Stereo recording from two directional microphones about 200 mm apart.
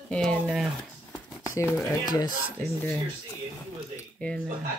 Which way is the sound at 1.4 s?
15° left (ahead or behind).